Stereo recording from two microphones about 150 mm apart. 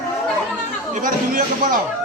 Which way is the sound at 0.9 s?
65° right (ahead or behind).